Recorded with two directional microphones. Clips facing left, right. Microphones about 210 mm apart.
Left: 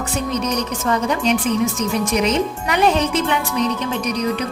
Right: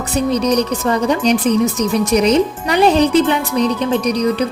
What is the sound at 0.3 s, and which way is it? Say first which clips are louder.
Speech: right 8 dB; 35° right (ahead or behind).